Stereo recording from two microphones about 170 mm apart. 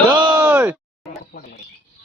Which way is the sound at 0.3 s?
15° right (ahead or behind).